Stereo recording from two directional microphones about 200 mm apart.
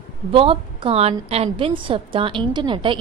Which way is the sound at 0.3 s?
25° right (ahead or behind).